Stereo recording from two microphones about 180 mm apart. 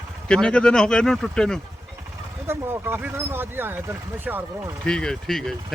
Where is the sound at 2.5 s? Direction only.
15° right (ahead or behind).